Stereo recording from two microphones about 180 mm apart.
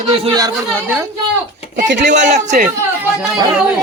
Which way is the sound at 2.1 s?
40° right (ahead or behind).